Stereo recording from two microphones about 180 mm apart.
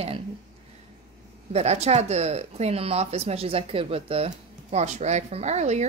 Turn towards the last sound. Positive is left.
turn(degrees=-40)  # may be behind; listen again after turning